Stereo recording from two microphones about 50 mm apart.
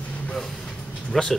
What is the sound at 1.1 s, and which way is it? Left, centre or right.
Speech, centre.